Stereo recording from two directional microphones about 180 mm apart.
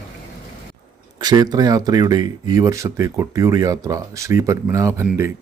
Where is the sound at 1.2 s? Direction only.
20° right (ahead or behind).